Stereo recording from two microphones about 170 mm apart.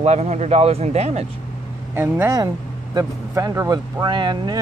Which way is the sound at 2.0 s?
15° right (ahead or behind).